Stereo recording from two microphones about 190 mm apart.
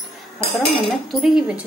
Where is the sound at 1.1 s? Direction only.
Centre (ahead or behind).